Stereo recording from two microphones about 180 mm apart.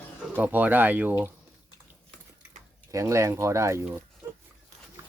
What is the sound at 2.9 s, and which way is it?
Speech, 15° right (ahead or behind).